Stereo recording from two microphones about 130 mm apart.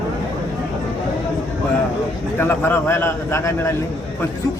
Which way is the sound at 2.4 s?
20° left (ahead or behind).